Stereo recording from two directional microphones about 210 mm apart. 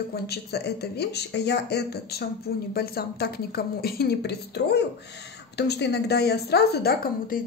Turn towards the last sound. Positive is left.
turn(degrees=45)  # may be behind; listen again after turning